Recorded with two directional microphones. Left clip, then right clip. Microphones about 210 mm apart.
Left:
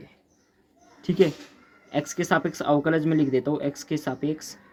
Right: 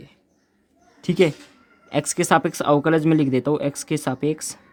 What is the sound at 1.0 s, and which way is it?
Speech, 45° right (ahead or behind).